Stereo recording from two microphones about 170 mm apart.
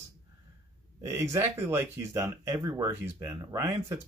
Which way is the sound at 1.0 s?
15° right (ahead or behind).